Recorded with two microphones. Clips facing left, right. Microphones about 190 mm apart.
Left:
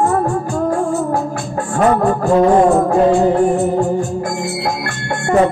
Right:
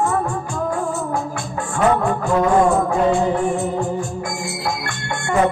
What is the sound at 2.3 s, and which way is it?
Music, 40° left (ahead or behind).